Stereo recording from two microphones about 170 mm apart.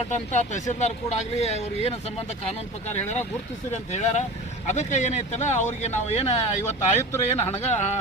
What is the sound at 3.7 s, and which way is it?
Speech, 40° left (ahead or behind).